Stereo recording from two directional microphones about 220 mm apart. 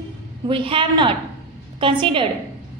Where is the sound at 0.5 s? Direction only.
25° right (ahead or behind).